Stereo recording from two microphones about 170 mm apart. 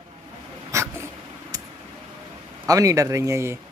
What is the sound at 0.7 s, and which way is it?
Dog, 15° right (ahead or behind).